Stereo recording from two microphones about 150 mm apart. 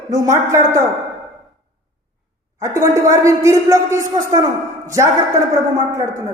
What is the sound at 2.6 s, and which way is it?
Speech, 20° right (ahead or behind).